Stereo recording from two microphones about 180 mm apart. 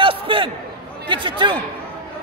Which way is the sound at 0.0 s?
30° right (ahead or behind).